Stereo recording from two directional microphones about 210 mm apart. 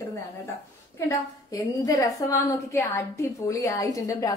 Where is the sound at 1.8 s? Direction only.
15° left (ahead or behind).